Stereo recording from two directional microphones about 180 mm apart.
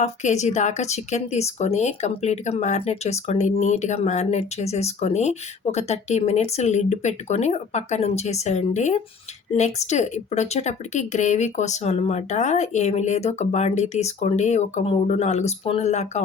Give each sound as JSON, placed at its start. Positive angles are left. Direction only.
{"t": 0.0, "sound": "a woman's voice", "side_deg": 40}